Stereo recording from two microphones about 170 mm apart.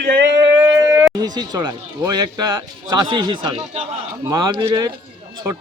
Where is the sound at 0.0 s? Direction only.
90° right.